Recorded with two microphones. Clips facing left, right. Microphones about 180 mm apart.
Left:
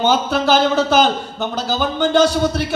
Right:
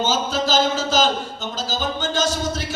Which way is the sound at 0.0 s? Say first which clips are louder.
Left 5 dB; 60° left (ahead or behind).